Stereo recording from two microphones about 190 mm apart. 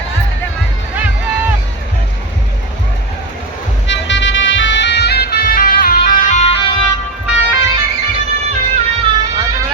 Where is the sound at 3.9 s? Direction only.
70° left (ahead or behind); by 6.5 s 40° left (ahead or behind).